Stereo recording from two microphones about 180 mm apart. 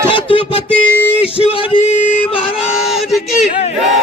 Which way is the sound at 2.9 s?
Centre (ahead or behind).